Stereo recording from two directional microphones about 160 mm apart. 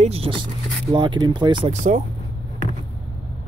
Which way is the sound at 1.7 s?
50° right (ahead or behind).